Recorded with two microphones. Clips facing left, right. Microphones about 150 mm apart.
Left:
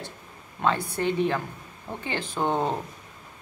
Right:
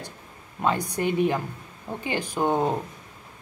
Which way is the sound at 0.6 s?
15° right (ahead or behind).